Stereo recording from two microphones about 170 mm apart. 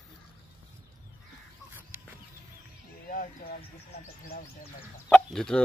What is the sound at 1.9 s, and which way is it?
Chicken, 15° right (ahead or behind).